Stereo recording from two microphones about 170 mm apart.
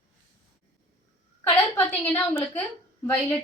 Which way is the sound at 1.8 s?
15° left (ahead or behind).